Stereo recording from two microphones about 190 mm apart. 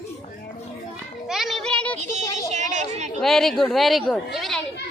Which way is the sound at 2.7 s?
40° right (ahead or behind).